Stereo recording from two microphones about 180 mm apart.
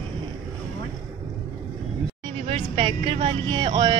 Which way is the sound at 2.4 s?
30° right (ahead or behind).